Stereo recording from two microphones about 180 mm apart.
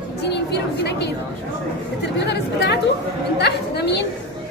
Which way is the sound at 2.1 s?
70° left (ahead or behind).